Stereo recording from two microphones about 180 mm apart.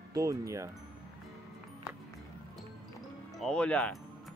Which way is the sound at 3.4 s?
5° left (ahead or behind).